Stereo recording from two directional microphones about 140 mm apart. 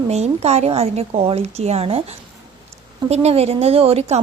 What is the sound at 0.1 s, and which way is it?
A woman's voice, 50° right (ahead or behind).